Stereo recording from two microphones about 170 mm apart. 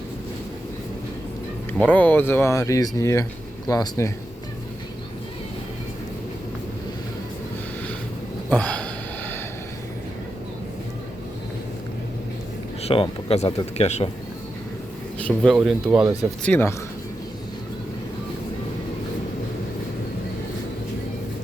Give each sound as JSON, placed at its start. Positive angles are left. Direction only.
{"t": 1.9, "sound": "speech", "side_deg": 10}
{"t": 8.4, "sound": "a sound", "side_deg": 10}
{"t": 12.8, "sound": "speech", "side_deg": 35}
{"t": 15.2, "sound": "speech", "side_deg": 0}
{"t": 16.4, "sound": "speech", "side_deg": 10}